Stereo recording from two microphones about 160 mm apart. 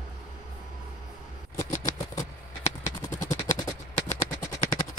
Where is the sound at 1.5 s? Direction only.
20° left (ahead or behind).